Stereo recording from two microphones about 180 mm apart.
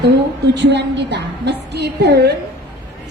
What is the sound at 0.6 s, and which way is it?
A woman's voice, 75° right (ahead or behind).